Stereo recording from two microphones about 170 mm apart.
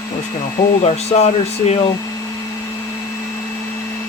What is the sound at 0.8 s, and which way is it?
Speech, 40° left (ahead or behind).